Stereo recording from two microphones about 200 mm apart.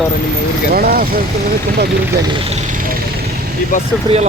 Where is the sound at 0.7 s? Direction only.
50° right (ahead or behind).